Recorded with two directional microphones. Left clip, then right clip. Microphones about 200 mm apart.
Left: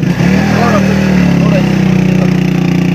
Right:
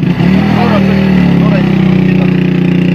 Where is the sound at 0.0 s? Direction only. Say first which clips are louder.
Even; 45° left (ahead or behind).